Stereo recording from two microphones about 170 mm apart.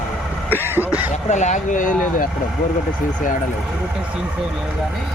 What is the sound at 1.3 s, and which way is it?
Speech, 45° left (ahead or behind).